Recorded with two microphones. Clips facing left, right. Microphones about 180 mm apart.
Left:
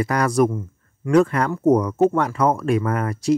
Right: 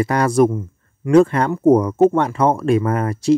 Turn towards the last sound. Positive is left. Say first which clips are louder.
# right 4 dB
turn(degrees=-25)  # may be behind; listen again after turning